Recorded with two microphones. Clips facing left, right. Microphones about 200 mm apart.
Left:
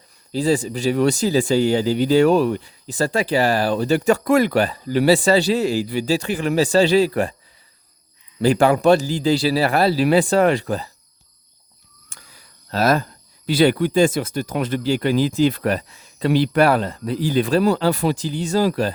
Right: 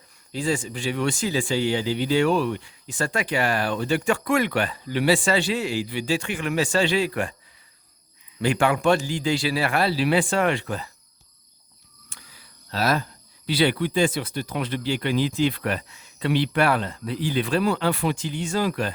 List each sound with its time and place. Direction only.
0.3 s speech: 35° left (ahead or behind)
8.4 s speech: 35° left (ahead or behind)
12.0 s a sound: 45° left (ahead or behind)
13.5 s speech: 45° left (ahead or behind)